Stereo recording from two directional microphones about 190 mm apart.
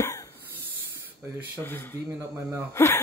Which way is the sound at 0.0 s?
15° left (ahead or behind).